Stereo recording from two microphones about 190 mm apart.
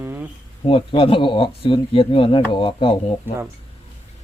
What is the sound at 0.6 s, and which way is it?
Speech, 25° left (ahead or behind).